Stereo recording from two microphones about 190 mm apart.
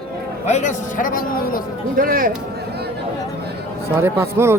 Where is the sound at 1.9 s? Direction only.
50° right (ahead or behind).